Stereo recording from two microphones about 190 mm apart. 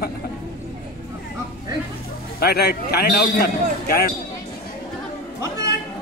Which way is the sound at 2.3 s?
55° left (ahead or behind).